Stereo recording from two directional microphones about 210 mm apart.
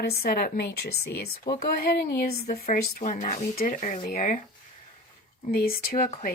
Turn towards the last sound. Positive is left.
turn(degrees=35)  # may be behind; listen again after turning